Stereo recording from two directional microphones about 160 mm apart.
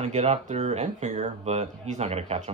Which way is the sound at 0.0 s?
45° right (ahead or behind).